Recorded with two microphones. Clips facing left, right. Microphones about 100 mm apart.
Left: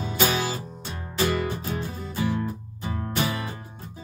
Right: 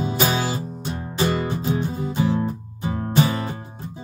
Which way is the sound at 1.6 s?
20° right (ahead or behind).